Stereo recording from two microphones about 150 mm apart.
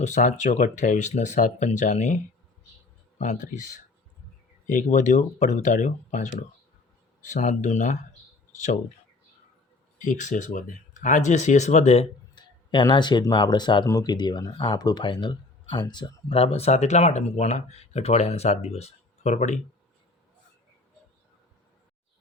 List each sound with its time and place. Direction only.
0.0 s speech: 55° left (ahead or behind)
3.2 s speech: 55° left (ahead or behind)
10.0 s speech: 55° left (ahead or behind)
12.3 s speech: 30° left (ahead or behind); by 19.5 s 50° left (ahead or behind)